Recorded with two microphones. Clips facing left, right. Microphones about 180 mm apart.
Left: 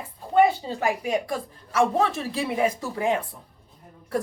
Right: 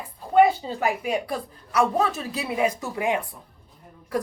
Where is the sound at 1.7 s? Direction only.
30° left (ahead or behind).